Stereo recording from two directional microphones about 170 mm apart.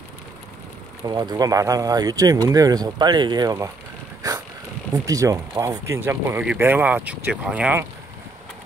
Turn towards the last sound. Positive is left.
turn(degrees=-10)  # may be behind; listen again after turning